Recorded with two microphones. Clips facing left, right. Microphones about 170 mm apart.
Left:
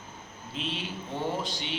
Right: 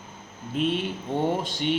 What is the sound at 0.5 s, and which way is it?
Speech, 50° right (ahead or behind).